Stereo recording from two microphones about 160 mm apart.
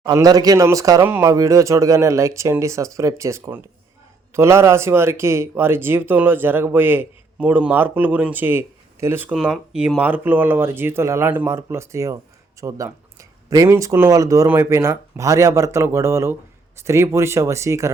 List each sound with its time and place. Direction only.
0.0 s speech: 20° right (ahead or behind)
9.3 s speech: 5° right (ahead or behind)